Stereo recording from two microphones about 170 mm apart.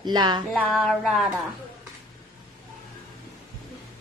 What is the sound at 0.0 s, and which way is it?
Speech, 25° right (ahead or behind).